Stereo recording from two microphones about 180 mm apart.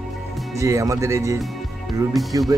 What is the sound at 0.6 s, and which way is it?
Speech, 15° right (ahead or behind).